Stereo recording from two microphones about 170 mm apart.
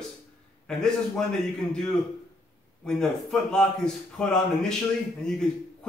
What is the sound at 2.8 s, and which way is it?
A man's voice, 5° left (ahead or behind).